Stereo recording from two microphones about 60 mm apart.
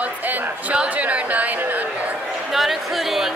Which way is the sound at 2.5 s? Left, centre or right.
Centre.